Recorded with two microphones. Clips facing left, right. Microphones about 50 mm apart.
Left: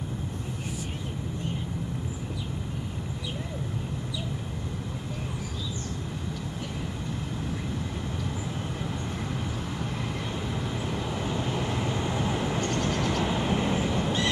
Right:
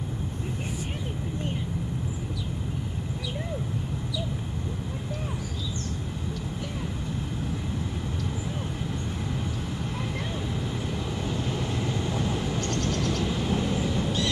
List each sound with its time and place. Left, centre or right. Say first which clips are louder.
10.5 s vehicle: even; centre